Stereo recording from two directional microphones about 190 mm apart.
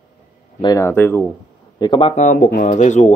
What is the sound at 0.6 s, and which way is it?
Speech, 20° left (ahead or behind).